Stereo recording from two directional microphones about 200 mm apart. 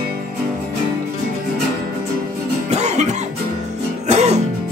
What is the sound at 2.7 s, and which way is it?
Music, 35° right (ahead or behind).